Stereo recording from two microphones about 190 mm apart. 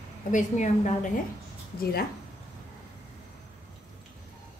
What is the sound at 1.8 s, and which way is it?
Speech, 55° left (ahead or behind).